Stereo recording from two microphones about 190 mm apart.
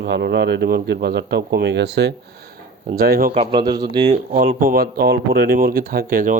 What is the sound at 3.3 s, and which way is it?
Speech, 25° right (ahead or behind).